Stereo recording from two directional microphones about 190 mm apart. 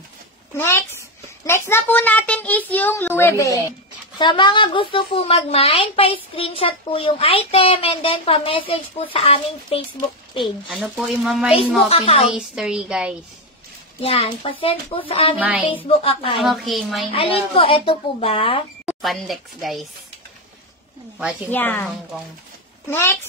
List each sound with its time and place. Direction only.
0.6 s a child's voice: 15° left (ahead or behind); by 9.8 s 30° left (ahead or behind)
10.7 s speech: centre (ahead or behind)
11.9 s a woman's voice: 30° left (ahead or behind)
12.3 s speech: 5° right (ahead or behind)
14.0 s a woman's voice: 30° left (ahead or behind)
15.3 s music: 5° right (ahead or behind)
15.9 s a woman's voice: 30° left (ahead or behind)
16.3 s speech: centre (ahead or behind)
17.1 s a woman's voice: 30° left (ahead or behind)
18.9 s speech: centre (ahead or behind)
21.2 s music: 5° right (ahead or behind)
21.5 s a child's voice: 10° left (ahead or behind)